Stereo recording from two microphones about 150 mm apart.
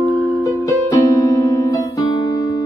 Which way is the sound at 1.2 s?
25° left (ahead or behind).